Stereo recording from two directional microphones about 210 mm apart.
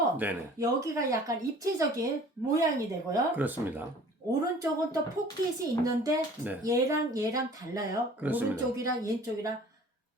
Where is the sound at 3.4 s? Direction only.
10° right (ahead or behind).